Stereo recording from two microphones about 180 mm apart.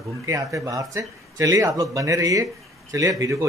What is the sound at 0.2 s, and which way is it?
Speech, 15° right (ahead or behind).